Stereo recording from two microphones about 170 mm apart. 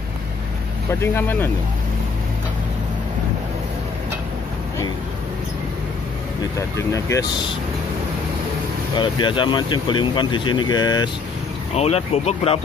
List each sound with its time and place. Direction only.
1.0 s speech: 15° left (ahead or behind)
6.9 s speech: 20° left (ahead or behind)
8.9 s speech: 30° left (ahead or behind)
11.7 s speech: 40° left (ahead or behind)